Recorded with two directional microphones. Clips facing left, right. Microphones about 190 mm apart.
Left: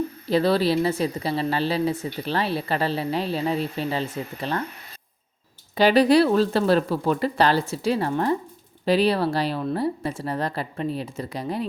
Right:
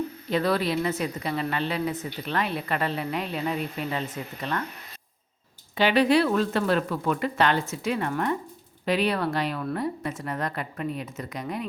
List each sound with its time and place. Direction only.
0.3 s speech: 30° left (ahead or behind)
5.7 s speech: 35° left (ahead or behind)